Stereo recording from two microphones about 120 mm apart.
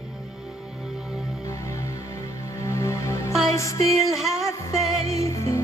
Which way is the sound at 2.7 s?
25° left (ahead or behind).